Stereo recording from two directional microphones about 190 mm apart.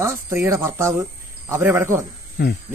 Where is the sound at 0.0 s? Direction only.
15° right (ahead or behind).